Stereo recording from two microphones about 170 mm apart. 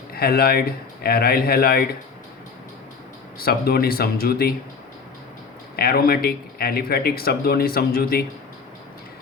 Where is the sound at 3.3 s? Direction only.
60° left (ahead or behind).